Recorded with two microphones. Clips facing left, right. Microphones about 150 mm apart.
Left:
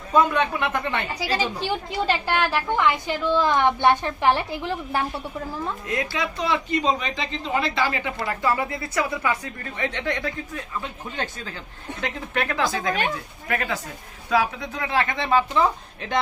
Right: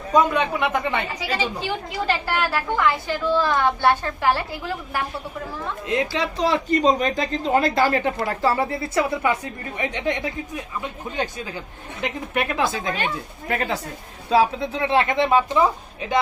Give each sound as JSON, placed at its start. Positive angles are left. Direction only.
{"t": 0.1, "sound": "speech", "side_deg": -10}
{"t": 2.2, "sound": "a woman's voice", "side_deg": 20}
{"t": 5.9, "sound": "a woman's voice", "side_deg": -30}